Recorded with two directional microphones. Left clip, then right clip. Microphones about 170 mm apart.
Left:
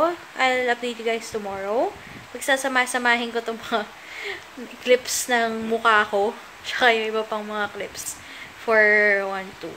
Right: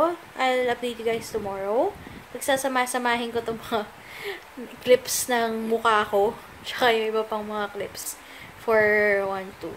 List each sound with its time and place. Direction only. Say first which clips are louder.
0.0 s a woman's voice: left 2 dB; 5° right (ahead or behind)